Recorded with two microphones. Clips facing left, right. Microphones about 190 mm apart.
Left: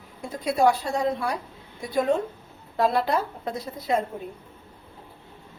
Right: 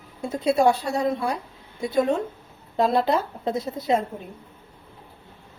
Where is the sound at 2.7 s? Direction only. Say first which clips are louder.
Right 2 dB; 20° right (ahead or behind).